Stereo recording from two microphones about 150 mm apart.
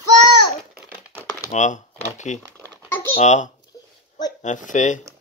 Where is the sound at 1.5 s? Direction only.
55° left (ahead or behind).